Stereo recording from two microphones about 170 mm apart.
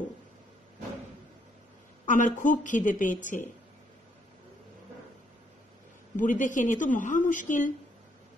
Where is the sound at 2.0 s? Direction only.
50° left (ahead or behind).